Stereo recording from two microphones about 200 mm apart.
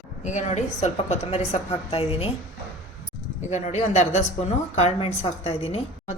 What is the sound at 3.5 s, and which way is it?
A woman's voice, 35° left (ahead or behind).